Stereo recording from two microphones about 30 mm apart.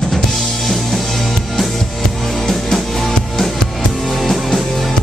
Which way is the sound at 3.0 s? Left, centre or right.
Centre.